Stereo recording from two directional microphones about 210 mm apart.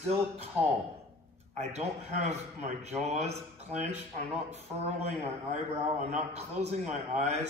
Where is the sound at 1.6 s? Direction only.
30° right (ahead or behind).